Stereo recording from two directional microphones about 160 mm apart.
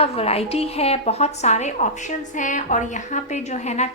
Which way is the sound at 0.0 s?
40° left (ahead or behind).